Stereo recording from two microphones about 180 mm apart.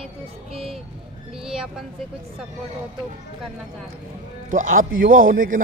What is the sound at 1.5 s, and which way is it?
Speech, 5° right (ahead or behind).